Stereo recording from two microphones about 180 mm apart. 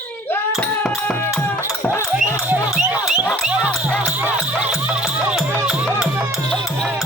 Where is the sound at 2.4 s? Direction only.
10° right (ahead or behind).